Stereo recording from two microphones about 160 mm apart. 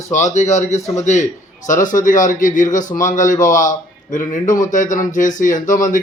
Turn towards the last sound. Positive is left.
turn(degrees=55)  # may be behind; listen again after turning